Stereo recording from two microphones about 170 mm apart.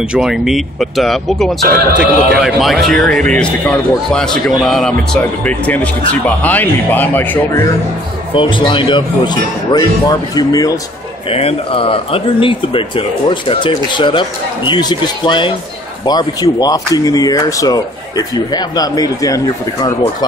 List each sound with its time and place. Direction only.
0.1 s a man's voice: 5° right (ahead or behind)
8.4 s speech: 30° left (ahead or behind)
11.2 s speech: 35° left (ahead or behind)